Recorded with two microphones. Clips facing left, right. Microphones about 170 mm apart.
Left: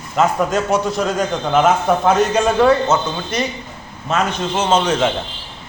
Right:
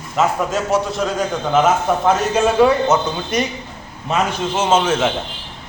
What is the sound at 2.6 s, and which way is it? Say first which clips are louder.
A man's voice: even; 15° right (ahead or behind).